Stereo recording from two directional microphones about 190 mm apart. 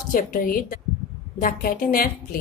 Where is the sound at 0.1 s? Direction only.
50° left (ahead or behind).